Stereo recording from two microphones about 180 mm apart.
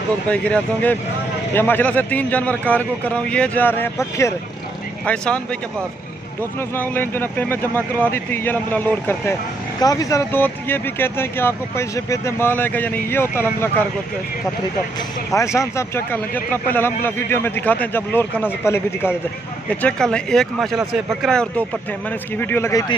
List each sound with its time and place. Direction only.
0.3 s speech: 10° left (ahead or behind)
6.7 s speech: 10° left (ahead or behind)
9.8 s speech: 20° left (ahead or behind)
15.3 s speech: 15° left (ahead or behind)